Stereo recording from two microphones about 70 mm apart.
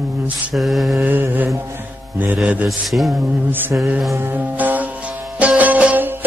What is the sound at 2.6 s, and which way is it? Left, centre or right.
Speech, centre.